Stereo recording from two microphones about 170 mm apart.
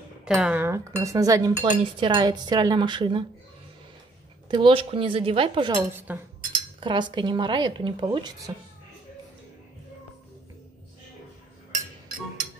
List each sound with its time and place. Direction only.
0.2 s speech: 5° right (ahead or behind); by 3.3 s 30° right (ahead or behind)
4.5 s a woman's voice: 30° right (ahead or behind)
5.7 s speech: 15° right (ahead or behind)
6.8 s speech: 30° right (ahead or behind)